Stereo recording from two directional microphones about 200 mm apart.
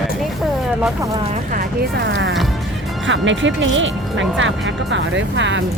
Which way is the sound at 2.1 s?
65° right (ahead or behind).